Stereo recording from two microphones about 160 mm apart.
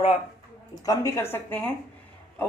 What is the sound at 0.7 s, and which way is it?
Speech, 20° left (ahead or behind).